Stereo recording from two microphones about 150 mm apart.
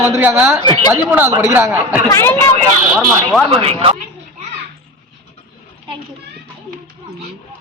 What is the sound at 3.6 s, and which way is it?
Speech, 40° right (ahead or behind).